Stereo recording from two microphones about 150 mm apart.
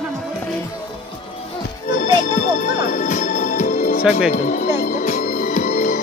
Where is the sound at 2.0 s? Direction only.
65° left (ahead or behind).